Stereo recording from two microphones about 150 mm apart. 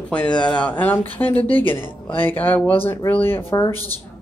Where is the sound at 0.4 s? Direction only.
10° left (ahead or behind).